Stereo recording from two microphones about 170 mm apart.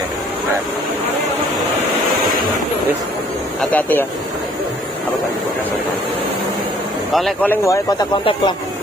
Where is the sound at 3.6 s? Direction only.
10° left (ahead or behind).